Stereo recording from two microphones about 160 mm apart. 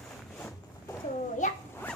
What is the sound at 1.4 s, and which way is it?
Speech, 50° left (ahead or behind).